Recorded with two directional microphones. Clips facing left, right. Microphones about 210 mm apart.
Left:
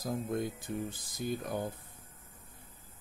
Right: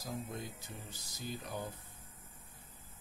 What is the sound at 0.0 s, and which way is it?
Speech, 50° left (ahead or behind).